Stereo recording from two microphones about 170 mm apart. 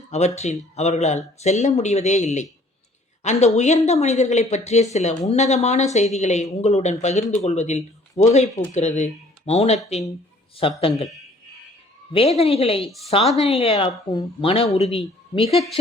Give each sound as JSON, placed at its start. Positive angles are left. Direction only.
{"t": 0.1, "sound": "a woman's voice", "side_deg": 40}
{"t": 12.1, "sound": "a woman's voice", "side_deg": 35}